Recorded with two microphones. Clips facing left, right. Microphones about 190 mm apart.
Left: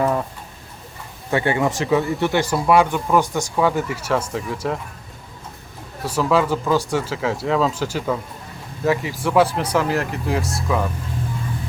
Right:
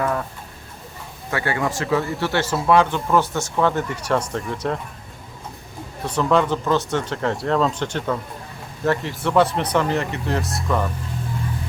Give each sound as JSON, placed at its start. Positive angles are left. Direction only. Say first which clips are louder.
{"t": 0.0, "sound": "speech", "louder": "left 3 dB", "side_deg": 15}
{"t": 1.3, "sound": "speech", "louder": "left 4 dB", "side_deg": 25}
{"t": 2.5, "sound": "speech", "louder": "left 1 dB", "side_deg": 0}
{"t": 2.7, "sound": "speech", "louder": "left 1 dB", "side_deg": 15}
{"t": 6.0, "sound": "speech", "louder": "even", "side_deg": 5}